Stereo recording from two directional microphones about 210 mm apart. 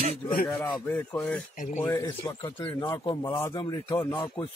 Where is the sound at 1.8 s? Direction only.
15° left (ahead or behind).